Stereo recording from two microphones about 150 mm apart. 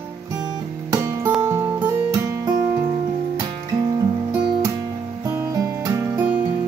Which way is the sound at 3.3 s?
25° right (ahead or behind).